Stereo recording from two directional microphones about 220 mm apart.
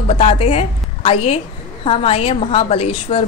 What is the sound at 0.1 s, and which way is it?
A woman's voice, 30° left (ahead or behind).